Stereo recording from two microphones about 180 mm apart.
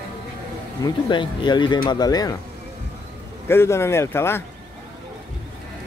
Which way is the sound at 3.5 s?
15° left (ahead or behind).